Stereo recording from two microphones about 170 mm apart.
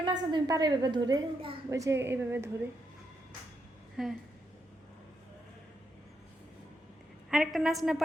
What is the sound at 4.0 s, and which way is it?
Speech, 5° right (ahead or behind).